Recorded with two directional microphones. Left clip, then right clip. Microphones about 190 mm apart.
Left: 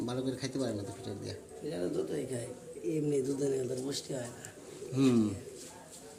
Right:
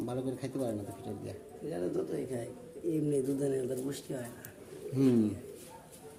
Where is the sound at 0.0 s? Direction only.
5° left (ahead or behind).